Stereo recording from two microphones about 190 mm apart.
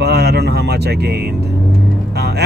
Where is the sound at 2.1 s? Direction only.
60° right (ahead or behind).